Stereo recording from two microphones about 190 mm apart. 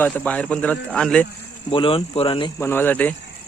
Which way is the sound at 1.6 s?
25° left (ahead or behind).